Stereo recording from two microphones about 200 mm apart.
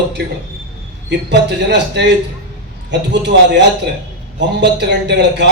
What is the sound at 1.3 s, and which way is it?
A man's voice, 60° right (ahead or behind).